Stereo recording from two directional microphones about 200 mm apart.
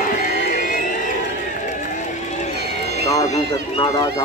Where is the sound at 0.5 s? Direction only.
45° left (ahead or behind).